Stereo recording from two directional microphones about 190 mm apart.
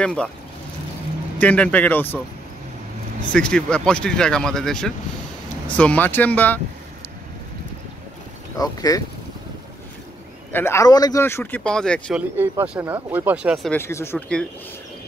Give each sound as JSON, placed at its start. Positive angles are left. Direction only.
{"t": 0.0, "sound": "speech", "side_deg": 5}
{"t": 1.4, "sound": "speech", "side_deg": 5}
{"t": 3.3, "sound": "speech", "side_deg": 5}
{"t": 8.5, "sound": "speech", "side_deg": 20}
{"t": 10.5, "sound": "speech", "side_deg": 15}
{"t": 12.4, "sound": "speech", "side_deg": -10}
{"t": 13.7, "sound": "speech", "side_deg": 15}